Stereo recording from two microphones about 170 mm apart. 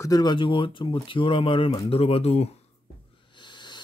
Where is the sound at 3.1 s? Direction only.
30° left (ahead or behind).